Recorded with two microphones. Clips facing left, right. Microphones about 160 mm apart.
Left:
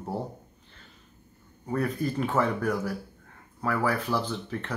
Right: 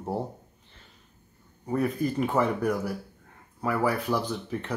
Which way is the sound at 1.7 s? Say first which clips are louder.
Right 2 dB; 10° right (ahead or behind).